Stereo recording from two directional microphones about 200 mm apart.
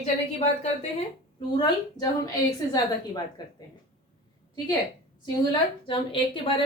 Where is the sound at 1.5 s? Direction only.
20° left (ahead or behind).